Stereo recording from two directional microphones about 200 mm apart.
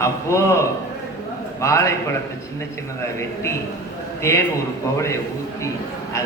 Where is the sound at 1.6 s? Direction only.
15° left (ahead or behind).